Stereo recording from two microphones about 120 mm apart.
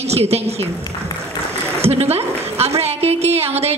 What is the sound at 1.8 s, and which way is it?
A woman's voice, 60° right (ahead or behind).